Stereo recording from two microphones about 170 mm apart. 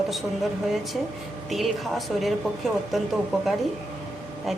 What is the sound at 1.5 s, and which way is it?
A woman's voice, centre (ahead or behind).